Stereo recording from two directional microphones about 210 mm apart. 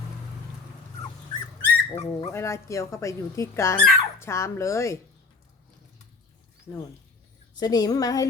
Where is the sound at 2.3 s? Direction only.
15° left (ahead or behind).